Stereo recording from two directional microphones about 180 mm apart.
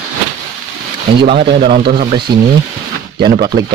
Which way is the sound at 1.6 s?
30° right (ahead or behind).